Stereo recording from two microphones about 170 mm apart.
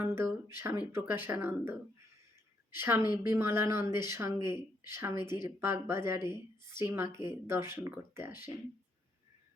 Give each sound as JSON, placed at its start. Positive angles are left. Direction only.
{"t": 0.0, "sound": "speech", "side_deg": -15}